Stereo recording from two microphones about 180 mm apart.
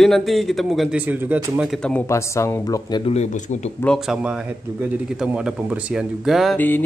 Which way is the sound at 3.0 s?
35° left (ahead or behind).